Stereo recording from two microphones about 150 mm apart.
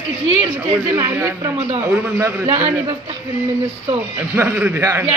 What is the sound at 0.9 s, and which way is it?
A man's voice, 15° right (ahead or behind).